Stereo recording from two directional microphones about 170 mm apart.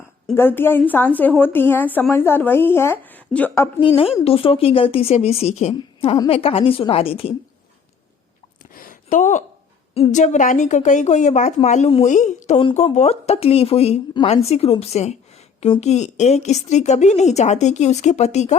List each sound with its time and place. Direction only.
0.3 s speech: 15° left (ahead or behind)
3.8 s a woman's voice: 30° left (ahead or behind)
8.7 s a sound: 55° left (ahead or behind)
9.9 s a woman's voice: 40° left (ahead or behind)